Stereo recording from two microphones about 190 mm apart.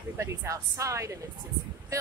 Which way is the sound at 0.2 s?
15° right (ahead or behind).